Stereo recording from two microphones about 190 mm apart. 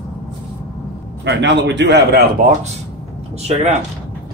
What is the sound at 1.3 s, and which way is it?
Speech, 65° right (ahead or behind).